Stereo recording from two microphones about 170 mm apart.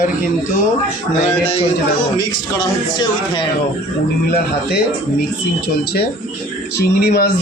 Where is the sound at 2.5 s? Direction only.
25° left (ahead or behind).